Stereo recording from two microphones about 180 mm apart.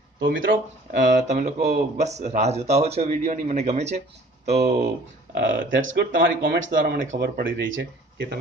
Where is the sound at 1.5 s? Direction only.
60° right (ahead or behind).